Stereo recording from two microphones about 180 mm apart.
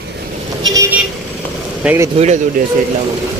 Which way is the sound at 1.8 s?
5° right (ahead or behind).